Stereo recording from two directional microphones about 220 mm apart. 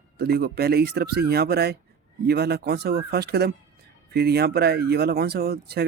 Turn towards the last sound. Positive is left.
turn(degrees=-45)  # may be behind; listen again after turning